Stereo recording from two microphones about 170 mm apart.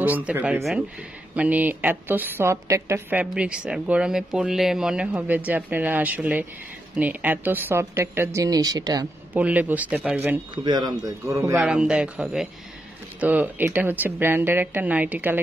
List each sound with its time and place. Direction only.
0.0 s a woman's voice: 10° right (ahead or behind)
9.3 s a woman's voice: 10° right (ahead or behind)
10.5 s a man's voice: 25° right (ahead or behind)
11.6 s a woman's voice: 5° right (ahead or behind)